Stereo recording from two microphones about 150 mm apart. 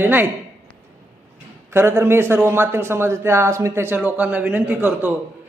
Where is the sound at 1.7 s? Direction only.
15° right (ahead or behind).